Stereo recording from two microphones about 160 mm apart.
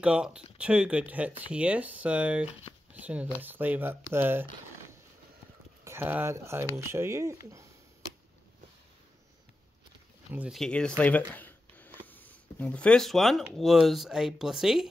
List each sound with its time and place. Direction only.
0.0 s speech: 5° right (ahead or behind)
5.9 s speech: 15° right (ahead or behind)
10.3 s speech: 10° right (ahead or behind)
10.6 s speech: 5° left (ahead or behind)